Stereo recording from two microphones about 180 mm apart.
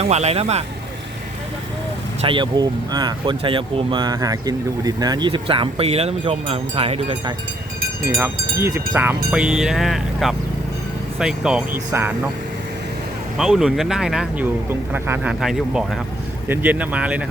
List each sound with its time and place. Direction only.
0.0 s speech: 35° right (ahead or behind)
2.2 s speech: 25° right (ahead or behind)
8.1 s speech: 15° right (ahead or behind)
13.3 s speech: centre (ahead or behind)